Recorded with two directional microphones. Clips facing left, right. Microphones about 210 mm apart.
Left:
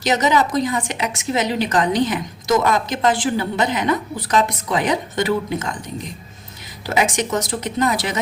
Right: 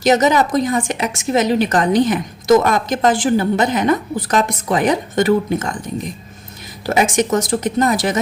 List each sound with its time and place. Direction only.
0.0 s a woman's voice: 50° right (ahead or behind)
6.8 s a woman's voice: 50° right (ahead or behind)